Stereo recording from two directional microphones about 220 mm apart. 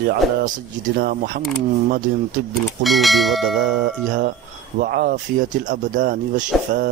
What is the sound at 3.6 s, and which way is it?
Speech, 45° right (ahead or behind).